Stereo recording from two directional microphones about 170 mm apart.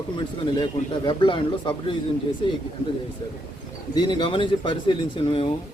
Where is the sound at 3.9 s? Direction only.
25° left (ahead or behind).